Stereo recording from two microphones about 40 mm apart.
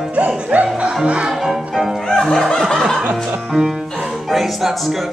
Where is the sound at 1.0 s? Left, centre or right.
Right.